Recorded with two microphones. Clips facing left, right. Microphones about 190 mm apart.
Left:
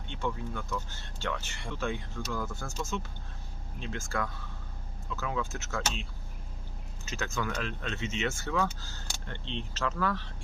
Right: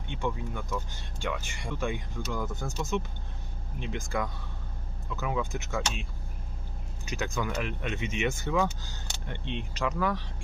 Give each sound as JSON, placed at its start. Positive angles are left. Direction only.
{"t": 0.1, "sound": "speech", "side_deg": -15}